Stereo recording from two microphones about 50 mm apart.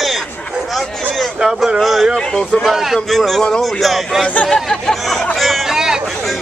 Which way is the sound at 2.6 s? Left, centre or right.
Centre.